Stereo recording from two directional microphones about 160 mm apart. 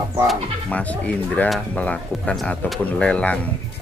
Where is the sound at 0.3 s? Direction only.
10° left (ahead or behind).